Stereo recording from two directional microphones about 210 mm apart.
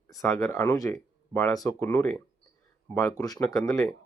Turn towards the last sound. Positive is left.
turn(degrees=15)  # may be behind; listen again after turning